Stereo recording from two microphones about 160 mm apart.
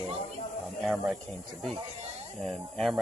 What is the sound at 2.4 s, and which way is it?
Speech, centre (ahead or behind).